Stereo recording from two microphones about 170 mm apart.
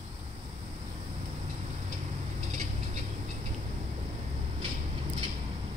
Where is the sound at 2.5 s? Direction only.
45° right (ahead or behind).